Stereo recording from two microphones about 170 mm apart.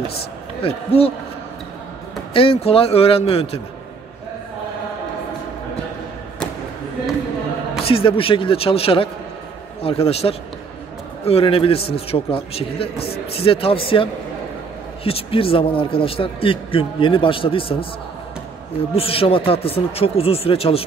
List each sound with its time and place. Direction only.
0.6 s a man's voice: 35° left (ahead or behind)
2.3 s a man's voice: 35° left (ahead or behind)
7.8 s a man's voice: 30° left (ahead or behind)
15.0 s a man's voice: 35° left (ahead or behind)
18.9 s a man's voice: 35° left (ahead or behind)